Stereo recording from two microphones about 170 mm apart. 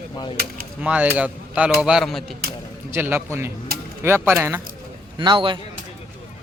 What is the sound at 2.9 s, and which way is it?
Speech, 15° right (ahead or behind).